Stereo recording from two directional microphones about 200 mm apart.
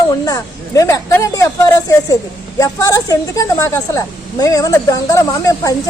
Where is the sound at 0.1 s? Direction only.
15° left (ahead or behind).